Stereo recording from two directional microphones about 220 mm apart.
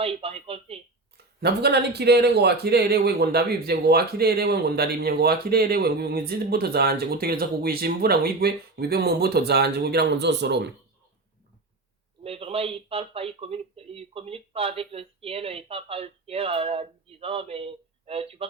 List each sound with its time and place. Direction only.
0.0 s speech: 25° right (ahead or behind)
1.1 s speech: 50° right (ahead or behind)
12.2 s speech: 25° right (ahead or behind)